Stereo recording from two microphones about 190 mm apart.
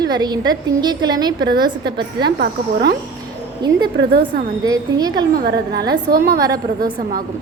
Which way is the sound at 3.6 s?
25° right (ahead or behind).